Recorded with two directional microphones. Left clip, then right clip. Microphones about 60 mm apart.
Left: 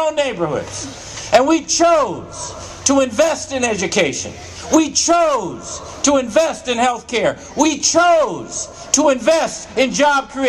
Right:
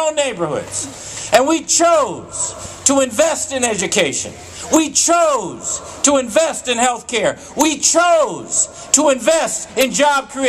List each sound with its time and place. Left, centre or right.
0.0 s a man's voice: right